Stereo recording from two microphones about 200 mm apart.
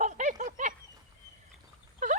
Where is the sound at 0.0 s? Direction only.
40° right (ahead or behind).